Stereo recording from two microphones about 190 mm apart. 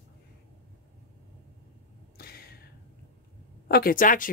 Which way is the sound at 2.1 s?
55° left (ahead or behind).